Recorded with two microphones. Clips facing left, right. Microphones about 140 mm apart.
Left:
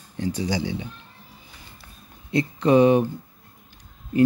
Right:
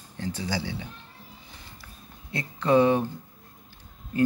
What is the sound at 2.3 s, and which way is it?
Speech, 20° left (ahead or behind).